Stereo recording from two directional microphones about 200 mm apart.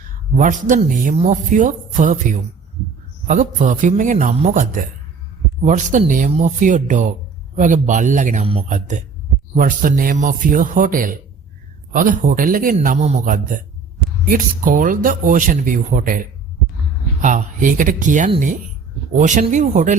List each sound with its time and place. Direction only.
0.3 s speech: 40° right (ahead or behind)
3.2 s speech: 40° right (ahead or behind)